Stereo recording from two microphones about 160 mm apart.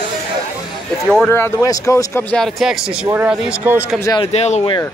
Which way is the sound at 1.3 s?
20° left (ahead or behind).